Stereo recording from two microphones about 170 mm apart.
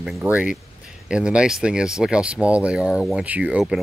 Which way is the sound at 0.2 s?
10° right (ahead or behind).